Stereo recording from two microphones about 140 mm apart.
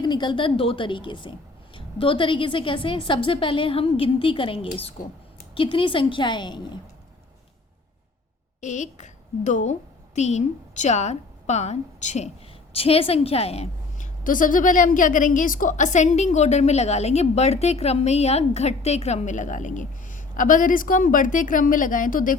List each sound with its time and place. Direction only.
0.0 s a woman's voice: 30° left (ahead or behind)
8.6 s a woman's voice: 55° left (ahead or behind)
12.7 s a woman's voice: 45° left (ahead or behind)
14.3 s a woman's voice: 75° left (ahead or behind)